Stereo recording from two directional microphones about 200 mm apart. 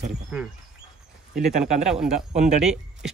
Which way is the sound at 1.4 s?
5° right (ahead or behind).